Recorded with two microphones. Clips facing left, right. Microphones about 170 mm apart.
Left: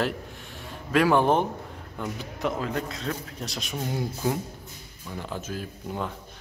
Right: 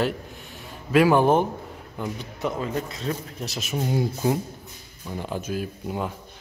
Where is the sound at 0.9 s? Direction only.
5° right (ahead or behind).